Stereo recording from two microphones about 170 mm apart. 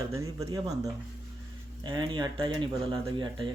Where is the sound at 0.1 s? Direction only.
15° right (ahead or behind).